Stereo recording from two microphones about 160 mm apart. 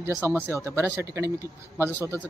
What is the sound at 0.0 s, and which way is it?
Speech, 15° right (ahead or behind).